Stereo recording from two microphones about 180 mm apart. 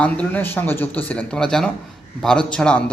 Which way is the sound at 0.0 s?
10° left (ahead or behind).